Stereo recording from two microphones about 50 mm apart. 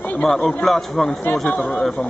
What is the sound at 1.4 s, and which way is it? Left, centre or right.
Speech, left.